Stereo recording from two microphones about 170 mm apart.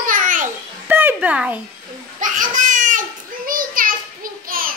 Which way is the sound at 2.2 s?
50° right (ahead or behind).